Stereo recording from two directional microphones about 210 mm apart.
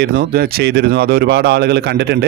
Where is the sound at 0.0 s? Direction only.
45° right (ahead or behind).